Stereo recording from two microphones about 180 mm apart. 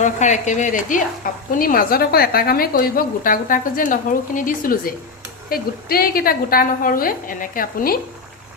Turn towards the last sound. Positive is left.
turn(degrees=55)  # may be behind; listen again after turning